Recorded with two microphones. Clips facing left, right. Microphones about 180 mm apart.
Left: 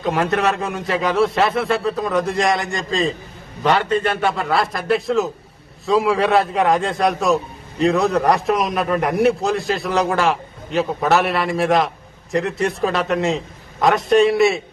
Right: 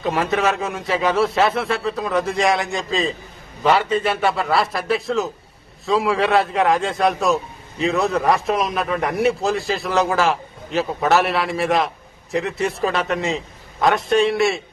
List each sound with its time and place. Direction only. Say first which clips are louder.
0.0 s a man's voice: left 1 dB; centre (ahead or behind)